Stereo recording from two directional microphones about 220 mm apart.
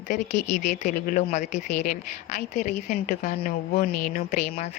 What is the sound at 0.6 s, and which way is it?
Speech, 30° left (ahead or behind).